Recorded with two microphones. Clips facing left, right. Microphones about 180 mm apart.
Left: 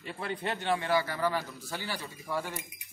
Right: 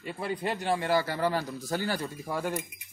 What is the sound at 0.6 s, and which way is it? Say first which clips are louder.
A man's voice: right 2 dB; 35° right (ahead or behind).